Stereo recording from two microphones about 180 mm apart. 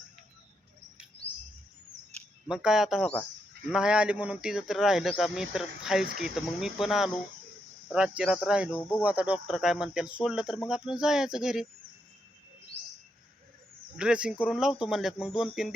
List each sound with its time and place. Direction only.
2.5 s speech: 5° right (ahead or behind)
12.7 s bird: 35° right (ahead or behind)
13.9 s speech: 5° right (ahead or behind)